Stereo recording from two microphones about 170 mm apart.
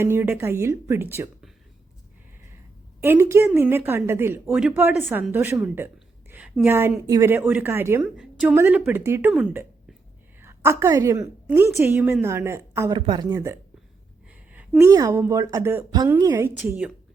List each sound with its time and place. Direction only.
0.0 s a woman's voice: 15° right (ahead or behind)
3.0 s a woman's voice: 15° right (ahead or behind)
9.3 s speech: centre (ahead or behind)
10.4 s a woman's voice: 15° right (ahead or behind)
12.9 s a woman's voice: 25° right (ahead or behind); by 16.9 s 10° right (ahead or behind)